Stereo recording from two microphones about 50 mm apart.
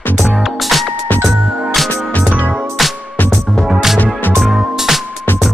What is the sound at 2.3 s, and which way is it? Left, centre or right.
Music, right.